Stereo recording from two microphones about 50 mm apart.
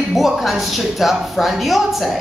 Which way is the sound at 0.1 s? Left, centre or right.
Centre.